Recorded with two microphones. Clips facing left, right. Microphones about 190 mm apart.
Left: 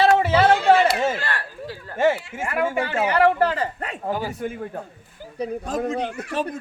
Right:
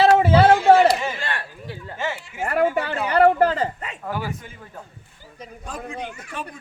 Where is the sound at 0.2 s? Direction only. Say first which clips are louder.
Right 2 dB; 20° right (ahead or behind).